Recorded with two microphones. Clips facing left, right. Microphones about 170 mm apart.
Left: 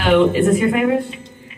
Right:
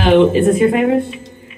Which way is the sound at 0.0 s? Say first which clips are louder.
Right 3 dB; 30° right (ahead or behind).